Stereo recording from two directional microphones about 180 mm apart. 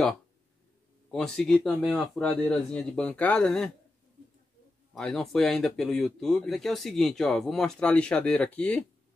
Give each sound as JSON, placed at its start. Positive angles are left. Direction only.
{"t": 1.1, "sound": "speech", "side_deg": 0}
{"t": 4.9, "sound": "speech", "side_deg": 0}